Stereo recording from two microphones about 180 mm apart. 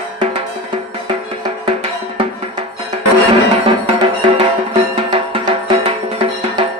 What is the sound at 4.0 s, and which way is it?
Music, 30° right (ahead or behind).